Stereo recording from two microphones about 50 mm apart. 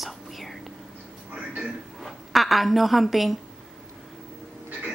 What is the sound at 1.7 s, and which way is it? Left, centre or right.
A woman's voice, centre.